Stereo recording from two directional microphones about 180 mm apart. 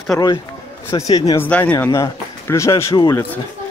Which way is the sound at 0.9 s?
20° left (ahead or behind).